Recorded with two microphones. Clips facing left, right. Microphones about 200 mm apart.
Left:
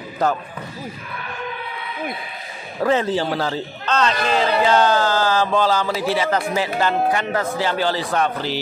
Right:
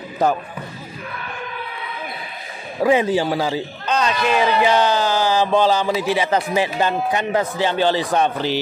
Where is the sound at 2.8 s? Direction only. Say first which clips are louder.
Right 2 dB; 15° right (ahead or behind).